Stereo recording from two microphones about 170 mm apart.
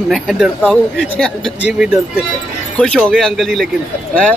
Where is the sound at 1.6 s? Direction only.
10° right (ahead or behind).